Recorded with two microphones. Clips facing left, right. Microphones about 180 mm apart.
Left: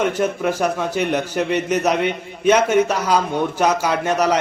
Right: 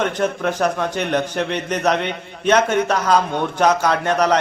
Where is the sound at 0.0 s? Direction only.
10° left (ahead or behind).